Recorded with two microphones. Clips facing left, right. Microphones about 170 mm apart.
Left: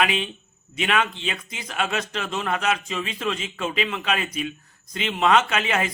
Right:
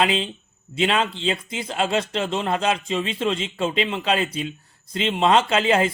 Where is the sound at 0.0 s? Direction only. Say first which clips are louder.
Right 2 dB; 30° right (ahead or behind).